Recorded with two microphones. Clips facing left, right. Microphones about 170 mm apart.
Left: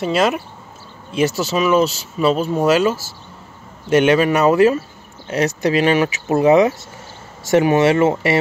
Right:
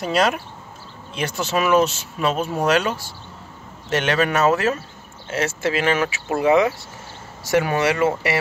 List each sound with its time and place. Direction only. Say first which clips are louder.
0.0 s speech: left 3 dB; centre (ahead or behind); by 8.4 s 25° left (ahead or behind)